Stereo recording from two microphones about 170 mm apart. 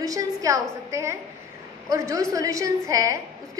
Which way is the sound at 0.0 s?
20° right (ahead or behind).